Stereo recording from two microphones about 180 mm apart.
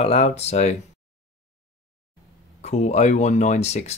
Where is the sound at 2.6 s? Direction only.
40° left (ahead or behind).